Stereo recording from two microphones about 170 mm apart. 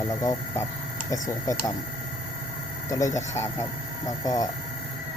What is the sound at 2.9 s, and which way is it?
Speech, 20° left (ahead or behind).